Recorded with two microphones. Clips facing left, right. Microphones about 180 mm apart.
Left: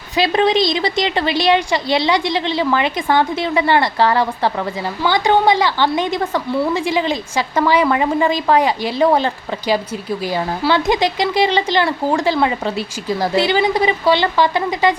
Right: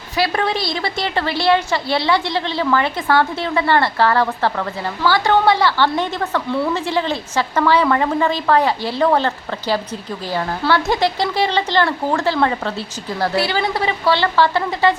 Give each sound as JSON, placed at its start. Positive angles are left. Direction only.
{"t": 0.2, "sound": "a woman's voice", "side_deg": 20}